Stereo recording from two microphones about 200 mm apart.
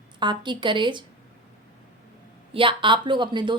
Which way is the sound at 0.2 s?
25° right (ahead or behind).